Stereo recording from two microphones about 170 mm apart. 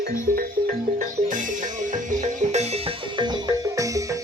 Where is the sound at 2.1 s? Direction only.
45° right (ahead or behind).